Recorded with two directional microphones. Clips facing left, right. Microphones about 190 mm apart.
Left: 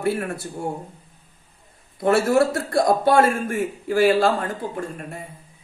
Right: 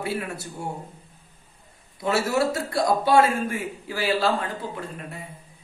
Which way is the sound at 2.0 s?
50° left (ahead or behind).